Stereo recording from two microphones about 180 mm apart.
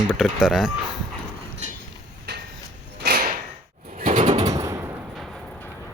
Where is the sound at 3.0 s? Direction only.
60° right (ahead or behind).